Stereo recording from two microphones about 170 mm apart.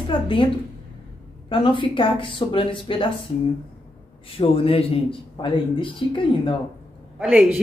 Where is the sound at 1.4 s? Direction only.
30° left (ahead or behind).